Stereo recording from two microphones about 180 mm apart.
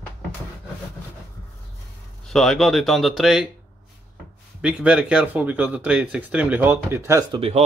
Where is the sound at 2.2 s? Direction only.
Centre (ahead or behind).